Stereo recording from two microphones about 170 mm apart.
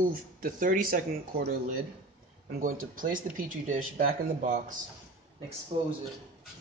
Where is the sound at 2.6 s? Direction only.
55° right (ahead or behind).